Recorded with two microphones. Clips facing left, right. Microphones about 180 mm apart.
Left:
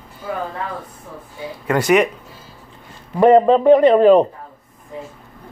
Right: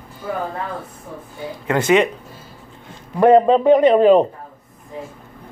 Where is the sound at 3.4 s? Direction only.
20° right (ahead or behind).